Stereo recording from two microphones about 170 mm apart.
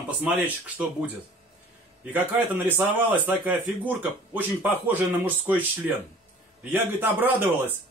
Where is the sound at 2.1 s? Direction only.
10° right (ahead or behind).